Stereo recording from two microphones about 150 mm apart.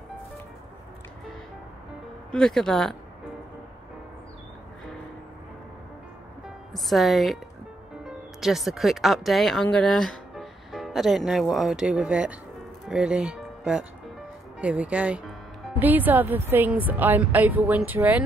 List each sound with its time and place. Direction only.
2.3 s speech: 5° left (ahead or behind)
6.7 s a woman's voice: centre (ahead or behind)